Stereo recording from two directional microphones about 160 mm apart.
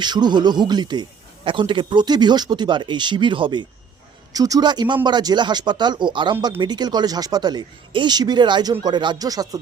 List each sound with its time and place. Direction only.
0.0 s speech: 25° right (ahead or behind)